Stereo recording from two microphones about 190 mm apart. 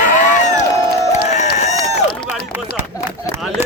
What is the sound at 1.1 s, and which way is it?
Crowd, 35° left (ahead or behind).